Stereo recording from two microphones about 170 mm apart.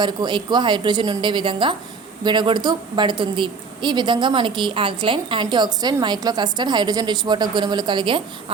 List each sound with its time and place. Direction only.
0.0 s a woman's voice: 25° right (ahead or behind)